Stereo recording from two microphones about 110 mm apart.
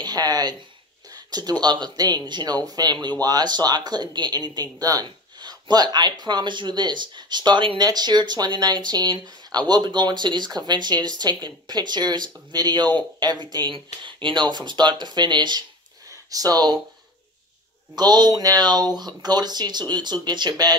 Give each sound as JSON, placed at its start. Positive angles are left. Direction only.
{"t": 0.0, "sound": "speech", "side_deg": -35}
{"t": 17.9, "sound": "speech", "side_deg": -40}